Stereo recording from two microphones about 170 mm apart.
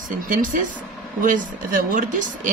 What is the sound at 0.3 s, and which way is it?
Speech, 50° right (ahead or behind).